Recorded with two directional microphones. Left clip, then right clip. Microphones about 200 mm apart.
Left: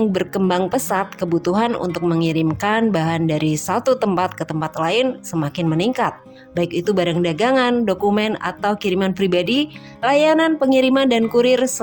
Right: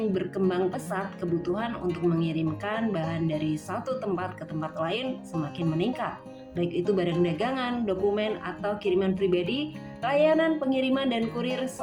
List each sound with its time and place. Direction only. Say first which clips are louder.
0.1 s a woman's voice: left 8 dB; 60° left (ahead or behind)